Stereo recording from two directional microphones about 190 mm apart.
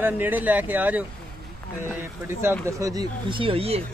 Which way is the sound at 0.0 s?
10° right (ahead or behind).